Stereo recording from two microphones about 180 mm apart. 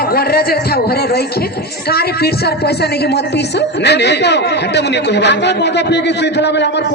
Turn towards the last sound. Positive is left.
turn(degrees=70)  # may be behind; listen again after turning